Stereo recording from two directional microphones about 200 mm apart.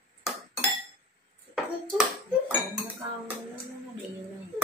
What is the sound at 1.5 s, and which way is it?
Ping, 5° right (ahead or behind).